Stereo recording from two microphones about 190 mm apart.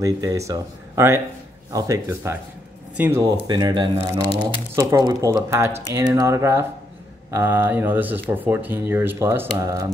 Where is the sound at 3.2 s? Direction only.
20° right (ahead or behind).